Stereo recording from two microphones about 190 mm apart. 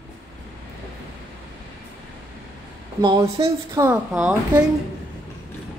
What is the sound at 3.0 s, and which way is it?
Speech, 25° right (ahead or behind).